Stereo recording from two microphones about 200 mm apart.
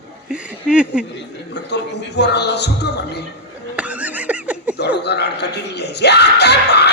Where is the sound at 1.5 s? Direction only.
60° left (ahead or behind).